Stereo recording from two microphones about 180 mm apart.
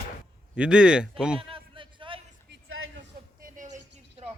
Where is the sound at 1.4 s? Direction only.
30° right (ahead or behind).